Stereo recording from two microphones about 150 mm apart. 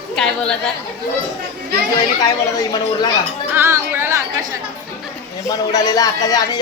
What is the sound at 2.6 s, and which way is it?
Speech, 25° left (ahead or behind).